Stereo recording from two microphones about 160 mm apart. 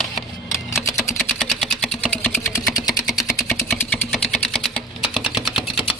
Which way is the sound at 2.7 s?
25° left (ahead or behind).